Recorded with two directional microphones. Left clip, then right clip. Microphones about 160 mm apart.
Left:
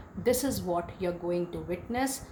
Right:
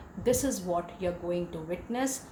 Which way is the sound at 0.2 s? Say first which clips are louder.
Even; 40° left (ahead or behind).